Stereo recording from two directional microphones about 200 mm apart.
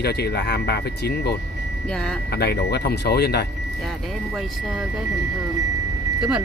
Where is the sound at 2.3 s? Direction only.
55° left (ahead or behind).